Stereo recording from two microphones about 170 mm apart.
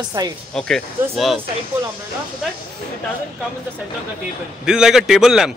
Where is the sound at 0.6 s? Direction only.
5° left (ahead or behind).